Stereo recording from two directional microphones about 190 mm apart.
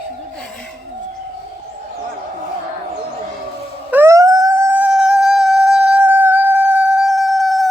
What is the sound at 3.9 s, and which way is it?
Howl, 15° right (ahead or behind).